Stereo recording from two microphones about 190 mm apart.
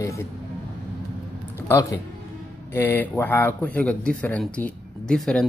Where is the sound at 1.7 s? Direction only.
15° left (ahead or behind).